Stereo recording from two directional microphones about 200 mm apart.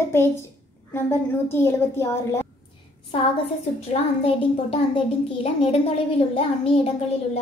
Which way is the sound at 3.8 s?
30° left (ahead or behind).